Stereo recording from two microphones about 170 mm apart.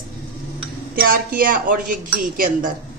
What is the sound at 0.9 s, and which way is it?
Speech, 60° right (ahead or behind).